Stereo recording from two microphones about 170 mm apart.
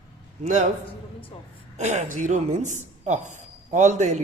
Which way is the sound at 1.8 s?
45° right (ahead or behind).